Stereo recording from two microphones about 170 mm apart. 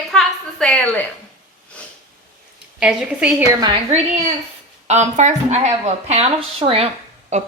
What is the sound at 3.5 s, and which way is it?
Speech, 25° right (ahead or behind).